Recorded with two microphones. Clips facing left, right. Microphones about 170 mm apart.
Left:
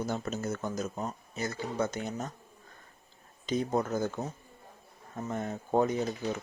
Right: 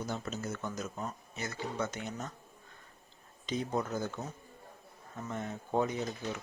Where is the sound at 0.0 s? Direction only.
45° left (ahead or behind).